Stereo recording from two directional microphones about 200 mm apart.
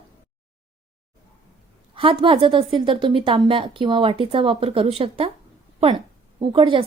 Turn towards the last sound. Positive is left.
turn(degrees=-25)  # may be behind; listen again after turning